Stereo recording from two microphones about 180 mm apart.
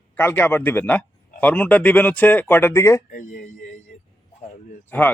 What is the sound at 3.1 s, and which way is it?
Speech, 45° left (ahead or behind).